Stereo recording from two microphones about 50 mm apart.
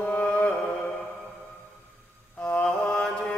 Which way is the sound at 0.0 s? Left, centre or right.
Left.